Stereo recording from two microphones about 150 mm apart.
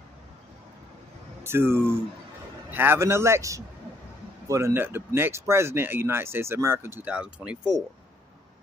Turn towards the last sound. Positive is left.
turn(degrees=-5)  # may be behind; listen again after turning